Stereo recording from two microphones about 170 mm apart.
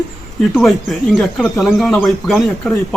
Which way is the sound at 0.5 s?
Centre (ahead or behind).